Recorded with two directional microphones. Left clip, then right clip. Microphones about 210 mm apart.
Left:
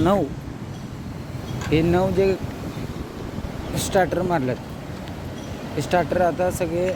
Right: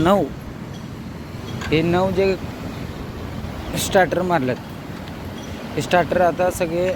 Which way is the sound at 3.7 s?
10° left (ahead or behind).